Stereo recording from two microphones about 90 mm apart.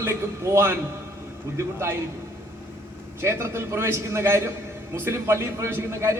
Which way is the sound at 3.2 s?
30° right (ahead or behind).